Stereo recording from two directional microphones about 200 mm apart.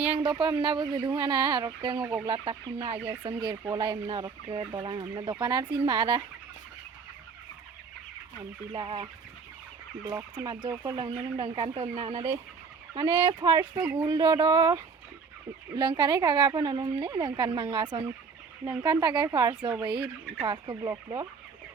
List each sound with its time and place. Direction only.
0.1 s speech: 25° right (ahead or behind)
2.3 s speech: 30° right (ahead or behind)
8.7 s speech: 25° right (ahead or behind)